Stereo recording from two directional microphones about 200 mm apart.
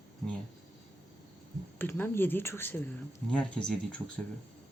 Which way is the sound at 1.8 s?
10° left (ahead or behind).